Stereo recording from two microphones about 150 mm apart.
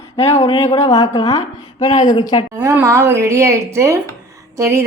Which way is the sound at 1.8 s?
50° left (ahead or behind).